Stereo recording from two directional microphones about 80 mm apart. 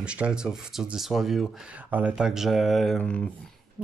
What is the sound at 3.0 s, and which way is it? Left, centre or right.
Speech, centre.